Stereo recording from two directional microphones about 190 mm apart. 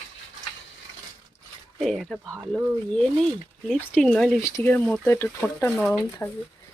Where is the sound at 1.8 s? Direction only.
Centre (ahead or behind).